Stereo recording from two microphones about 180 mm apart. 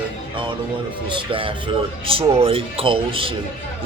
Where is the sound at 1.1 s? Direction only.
30° right (ahead or behind).